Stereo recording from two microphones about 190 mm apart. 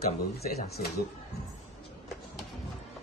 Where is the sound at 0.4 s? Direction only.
55° left (ahead or behind).